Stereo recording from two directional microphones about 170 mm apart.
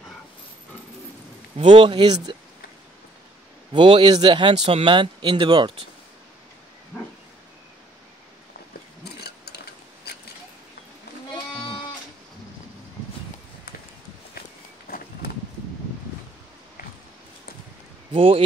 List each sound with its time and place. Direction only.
1.7 s speech: 30° right (ahead or behind)
3.7 s speech: 30° right (ahead or behind)
9.0 s a sound: 70° left (ahead or behind)
18.1 s speech: 35° right (ahead or behind)